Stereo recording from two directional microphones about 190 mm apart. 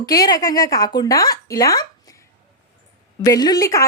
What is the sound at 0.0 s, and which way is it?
Speech, 20° left (ahead or behind).